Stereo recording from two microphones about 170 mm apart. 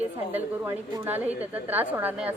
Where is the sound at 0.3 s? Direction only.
15° right (ahead or behind).